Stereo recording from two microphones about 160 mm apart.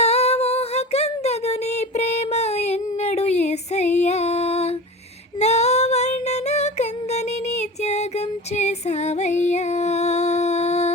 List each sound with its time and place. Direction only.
0.0 s a sound: 40° left (ahead or behind)
5.4 s female singing: 45° left (ahead or behind)
8.5 s music: 45° left (ahead or behind)